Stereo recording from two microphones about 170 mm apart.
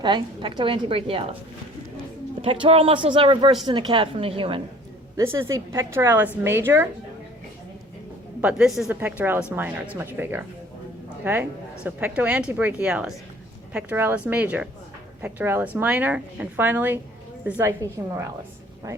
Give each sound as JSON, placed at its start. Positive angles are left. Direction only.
{"t": 0.0, "sound": "speech", "side_deg": -25}
{"t": 2.4, "sound": "speech", "side_deg": -35}
{"t": 5.1, "sound": "a woman's voice", "side_deg": -15}
{"t": 8.4, "sound": "a woman's voice", "side_deg": -5}